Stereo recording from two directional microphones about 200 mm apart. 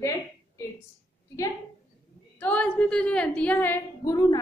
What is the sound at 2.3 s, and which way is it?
A woman's voice, 5° left (ahead or behind).